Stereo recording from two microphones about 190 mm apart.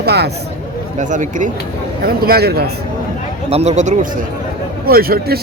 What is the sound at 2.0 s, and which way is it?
Speech, 55° right (ahead or behind).